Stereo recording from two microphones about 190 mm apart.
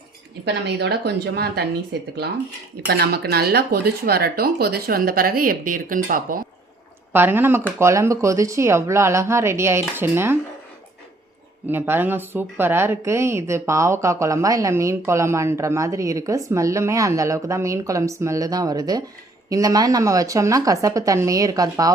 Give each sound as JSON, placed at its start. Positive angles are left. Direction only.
{"t": 0.4, "sound": "a woman's voice", "side_deg": -60}
{"t": 7.1, "sound": "a woman's voice", "side_deg": -10}
{"t": 11.7, "sound": "a woman's voice", "side_deg": -10}